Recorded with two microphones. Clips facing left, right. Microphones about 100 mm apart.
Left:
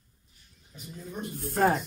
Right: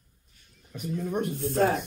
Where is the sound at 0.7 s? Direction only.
70° right (ahead or behind).